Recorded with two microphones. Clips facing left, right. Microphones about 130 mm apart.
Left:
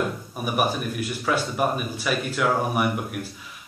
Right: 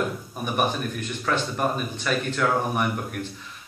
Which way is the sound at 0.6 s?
10° left (ahead or behind).